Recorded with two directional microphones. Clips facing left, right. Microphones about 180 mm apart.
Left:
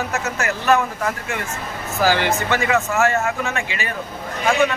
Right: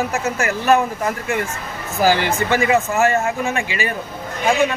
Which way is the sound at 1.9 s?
15° right (ahead or behind).